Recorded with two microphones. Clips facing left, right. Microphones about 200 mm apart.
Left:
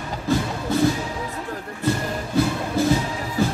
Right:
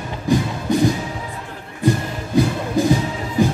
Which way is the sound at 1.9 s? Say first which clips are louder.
Right 4 dB; 15° right (ahead or behind).